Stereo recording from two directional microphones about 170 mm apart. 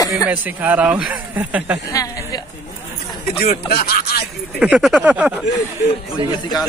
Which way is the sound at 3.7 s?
65° left (ahead or behind).